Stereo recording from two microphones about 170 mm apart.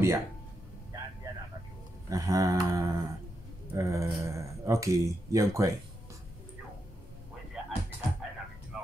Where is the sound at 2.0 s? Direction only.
20° right (ahead or behind).